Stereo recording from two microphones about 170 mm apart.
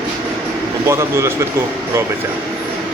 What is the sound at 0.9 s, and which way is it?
Speech, 15° right (ahead or behind).